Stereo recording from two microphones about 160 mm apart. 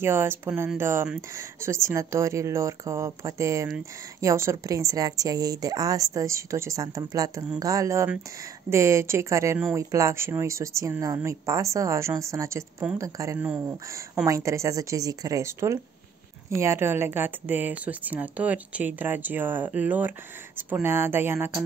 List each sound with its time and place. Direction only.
0.0 s speech: 15° right (ahead or behind)